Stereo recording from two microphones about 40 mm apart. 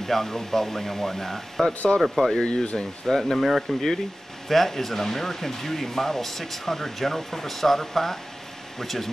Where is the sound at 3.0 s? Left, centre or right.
Centre.